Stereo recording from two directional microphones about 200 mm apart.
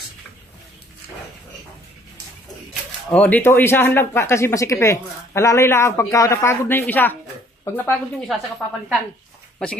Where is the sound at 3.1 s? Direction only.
5° left (ahead or behind).